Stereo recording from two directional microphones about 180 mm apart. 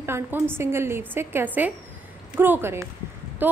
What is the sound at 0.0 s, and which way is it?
A woman's voice, 10° right (ahead or behind).